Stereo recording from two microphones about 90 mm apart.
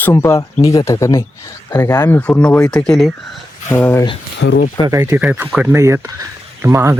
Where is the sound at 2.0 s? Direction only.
25° left (ahead or behind).